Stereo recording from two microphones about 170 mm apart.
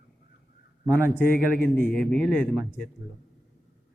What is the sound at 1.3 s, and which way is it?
Speech, 65° left (ahead or behind).